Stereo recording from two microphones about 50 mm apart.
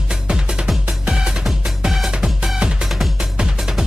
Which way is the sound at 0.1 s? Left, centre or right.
Centre.